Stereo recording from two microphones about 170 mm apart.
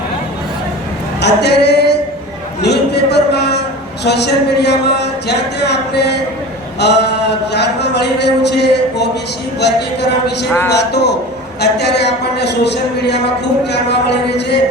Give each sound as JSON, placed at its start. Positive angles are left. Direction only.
{"t": 1.2, "sound": "singing", "side_deg": 80}
{"t": 2.6, "sound": "a sound", "side_deg": 75}
{"t": 4.0, "sound": "a man's voice", "side_deg": 80}